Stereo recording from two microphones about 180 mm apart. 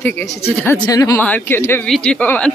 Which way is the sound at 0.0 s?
15° left (ahead or behind).